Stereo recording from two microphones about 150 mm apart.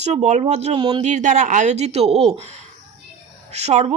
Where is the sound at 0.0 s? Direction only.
50° right (ahead or behind).